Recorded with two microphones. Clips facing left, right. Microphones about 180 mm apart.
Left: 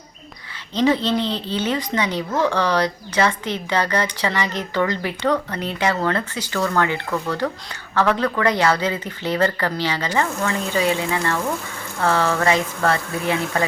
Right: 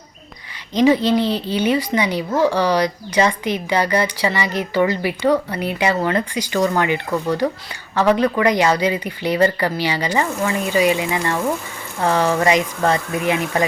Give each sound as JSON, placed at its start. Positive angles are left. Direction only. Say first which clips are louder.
{"t": 0.7, "sound": "speech", "louder": "right 4 dB", "side_deg": -10}